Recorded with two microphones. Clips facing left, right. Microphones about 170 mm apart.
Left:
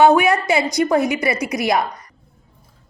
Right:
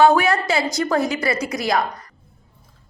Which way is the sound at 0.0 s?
20° left (ahead or behind).